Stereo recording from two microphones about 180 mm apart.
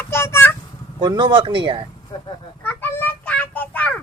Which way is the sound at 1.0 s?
25° right (ahead or behind).